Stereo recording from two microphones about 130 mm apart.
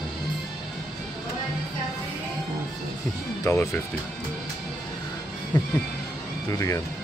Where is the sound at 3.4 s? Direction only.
20° left (ahead or behind).